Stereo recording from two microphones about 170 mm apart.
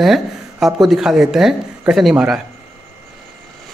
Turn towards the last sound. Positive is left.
turn(degrees=-5)  # may be behind; listen again after turning